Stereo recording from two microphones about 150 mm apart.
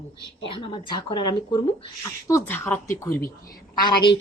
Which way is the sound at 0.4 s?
35° left (ahead or behind).